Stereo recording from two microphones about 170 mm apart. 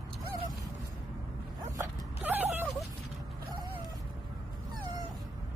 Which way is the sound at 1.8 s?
10° right (ahead or behind).